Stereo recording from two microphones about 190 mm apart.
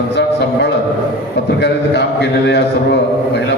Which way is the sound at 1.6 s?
65° left (ahead or behind).